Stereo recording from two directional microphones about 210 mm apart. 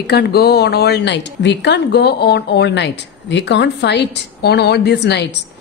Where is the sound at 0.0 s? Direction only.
50° left (ahead or behind).